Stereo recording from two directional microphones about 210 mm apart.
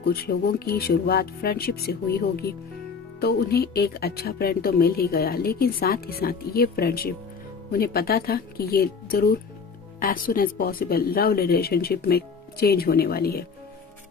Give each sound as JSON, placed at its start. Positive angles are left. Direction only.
{"t": 0.0, "sound": "speech", "side_deg": 45}